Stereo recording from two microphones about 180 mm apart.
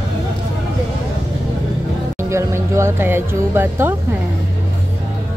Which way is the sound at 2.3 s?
15° right (ahead or behind).